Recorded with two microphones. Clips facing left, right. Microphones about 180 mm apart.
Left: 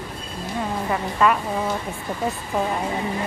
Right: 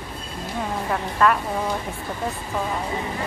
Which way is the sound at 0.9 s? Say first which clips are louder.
Even; 5° left (ahead or behind).